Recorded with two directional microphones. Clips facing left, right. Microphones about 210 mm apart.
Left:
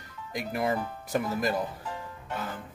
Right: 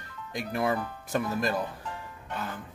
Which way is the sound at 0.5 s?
20° left (ahead or behind).